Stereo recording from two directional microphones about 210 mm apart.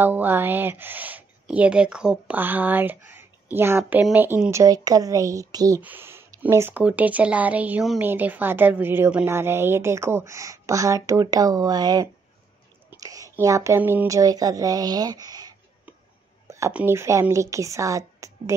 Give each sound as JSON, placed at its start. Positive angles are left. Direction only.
{"t": 0.0, "sound": "a woman's voice", "side_deg": -10}